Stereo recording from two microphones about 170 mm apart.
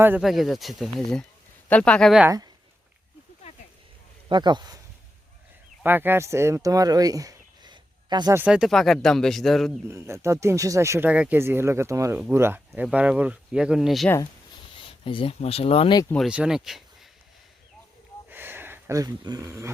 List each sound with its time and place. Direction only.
0.2 s speech: centre (ahead or behind)
2.2 s speech: 20° right (ahead or behind)
4.3 s speech: 25° right (ahead or behind)
5.8 s speech: 10° right (ahead or behind)
8.4 s speech: 5° right (ahead or behind)
9.9 s speech: 15° right (ahead or behind)
14.8 s speech: 30° left (ahead or behind)
16.1 s speech: 5° right (ahead or behind)
18.3 s a sound: 10° right (ahead or behind)